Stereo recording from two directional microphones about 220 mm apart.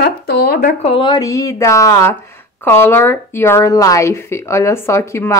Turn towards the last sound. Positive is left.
turn(degrees=15)  # may be behind; listen again after turning